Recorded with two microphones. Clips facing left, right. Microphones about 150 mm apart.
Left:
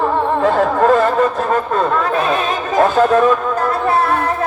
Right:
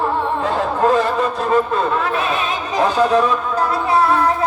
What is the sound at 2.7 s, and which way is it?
Chatter, 50° left (ahead or behind).